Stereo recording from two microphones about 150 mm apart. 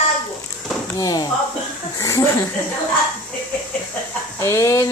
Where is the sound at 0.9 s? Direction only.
25° left (ahead or behind).